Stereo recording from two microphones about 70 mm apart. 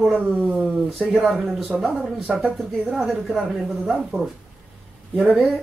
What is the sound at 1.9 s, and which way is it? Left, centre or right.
Speech, centre.